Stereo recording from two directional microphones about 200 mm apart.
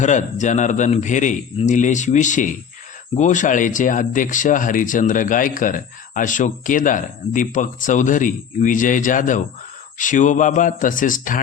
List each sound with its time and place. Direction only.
0.0 s speech: 35° left (ahead or behind)